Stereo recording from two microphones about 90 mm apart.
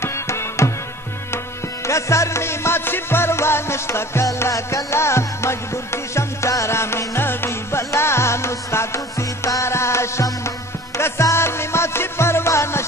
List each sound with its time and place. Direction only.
0.0 s music: 30° left (ahead or behind)
1.9 s music: 35° left (ahead or behind)